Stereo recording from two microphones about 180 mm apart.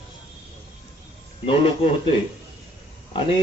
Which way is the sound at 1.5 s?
30° left (ahead or behind).